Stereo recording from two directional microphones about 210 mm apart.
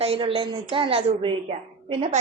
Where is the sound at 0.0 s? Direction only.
25° right (ahead or behind).